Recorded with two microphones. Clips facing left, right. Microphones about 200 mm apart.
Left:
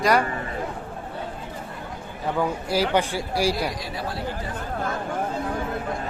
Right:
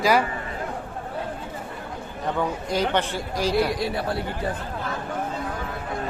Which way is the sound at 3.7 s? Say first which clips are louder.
Right 5 dB; 60° right (ahead or behind).